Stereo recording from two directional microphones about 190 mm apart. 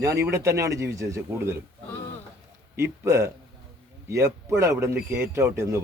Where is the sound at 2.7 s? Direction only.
15° right (ahead or behind).